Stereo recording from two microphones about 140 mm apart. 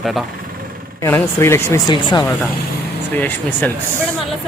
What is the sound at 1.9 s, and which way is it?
Speech, 35° left (ahead or behind).